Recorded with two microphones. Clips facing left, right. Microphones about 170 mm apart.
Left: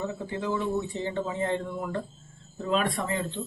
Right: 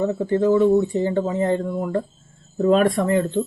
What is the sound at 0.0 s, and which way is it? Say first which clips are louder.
Speech: right 12 dB; 50° right (ahead or behind).